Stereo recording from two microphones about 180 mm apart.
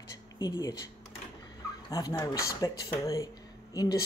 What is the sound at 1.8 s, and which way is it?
Speech, 20° left (ahead or behind).